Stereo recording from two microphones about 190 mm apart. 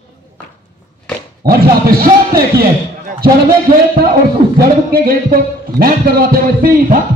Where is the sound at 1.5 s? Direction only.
50° right (ahead or behind).